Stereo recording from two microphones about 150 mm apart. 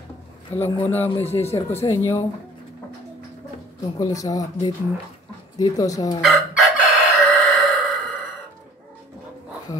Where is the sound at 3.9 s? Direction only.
25° left (ahead or behind).